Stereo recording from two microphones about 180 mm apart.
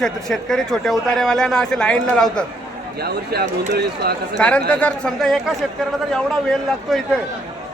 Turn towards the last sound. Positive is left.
turn(degrees=0)  # may be behind; listen again after turning